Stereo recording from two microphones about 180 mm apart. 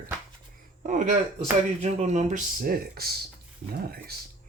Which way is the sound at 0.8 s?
45° right (ahead or behind).